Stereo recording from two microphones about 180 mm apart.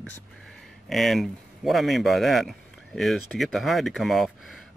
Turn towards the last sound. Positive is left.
turn(degrees=0)  # may be behind; listen again after turning